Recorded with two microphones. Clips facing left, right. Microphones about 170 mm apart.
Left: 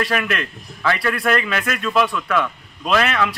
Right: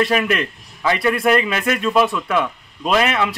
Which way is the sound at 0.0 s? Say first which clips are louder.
Right 4 dB; 15° right (ahead or behind).